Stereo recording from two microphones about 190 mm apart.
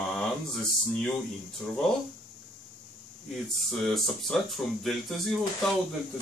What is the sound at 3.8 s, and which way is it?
Speech, centre (ahead or behind).